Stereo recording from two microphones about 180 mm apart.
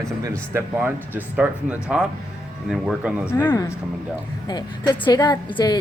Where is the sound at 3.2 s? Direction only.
15° left (ahead or behind).